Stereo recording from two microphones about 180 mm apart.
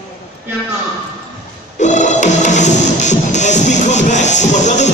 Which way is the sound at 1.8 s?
40° left (ahead or behind).